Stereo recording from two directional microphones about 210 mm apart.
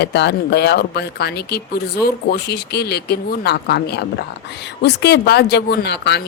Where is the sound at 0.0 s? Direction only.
55° left (ahead or behind).